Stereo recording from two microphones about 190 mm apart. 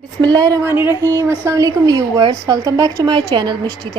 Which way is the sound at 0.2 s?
20° right (ahead or behind).